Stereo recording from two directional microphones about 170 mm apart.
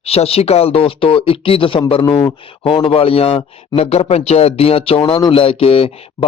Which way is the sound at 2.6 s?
30° left (ahead or behind).